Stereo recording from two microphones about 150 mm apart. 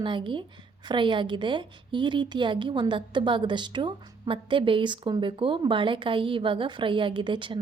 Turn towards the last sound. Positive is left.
turn(degrees=-35)  # may be behind; listen again after turning